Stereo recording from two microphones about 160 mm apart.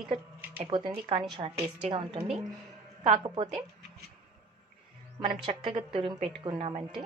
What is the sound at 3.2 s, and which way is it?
Speech, 35° right (ahead or behind).